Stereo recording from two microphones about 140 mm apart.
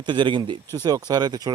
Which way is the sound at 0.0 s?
35° right (ahead or behind).